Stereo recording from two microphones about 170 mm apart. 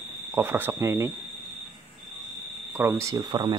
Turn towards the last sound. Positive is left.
turn(degrees=-25)  # may be behind; listen again after turning